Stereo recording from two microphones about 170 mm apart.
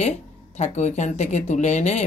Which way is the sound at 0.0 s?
40° left (ahead or behind).